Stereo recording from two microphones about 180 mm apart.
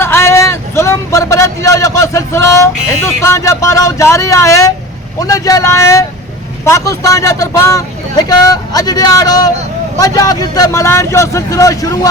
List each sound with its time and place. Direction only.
0.0 s speech: 15° left (ahead or behind)